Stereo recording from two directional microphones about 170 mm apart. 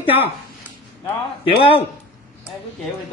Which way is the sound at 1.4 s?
35° left (ahead or behind).